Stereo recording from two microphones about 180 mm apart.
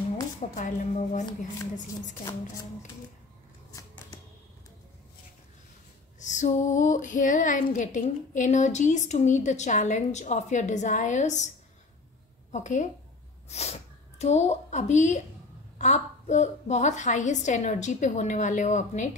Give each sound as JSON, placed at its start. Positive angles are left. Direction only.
{"t": 0.6, "sound": "female singing", "side_deg": 45}
{"t": 3.7, "sound": "a sound", "side_deg": 15}
{"t": 6.1, "sound": "female singing", "side_deg": 40}
{"t": 12.5, "sound": "female singing", "side_deg": 45}
{"t": 13.5, "sound": "a woman's voice", "side_deg": 35}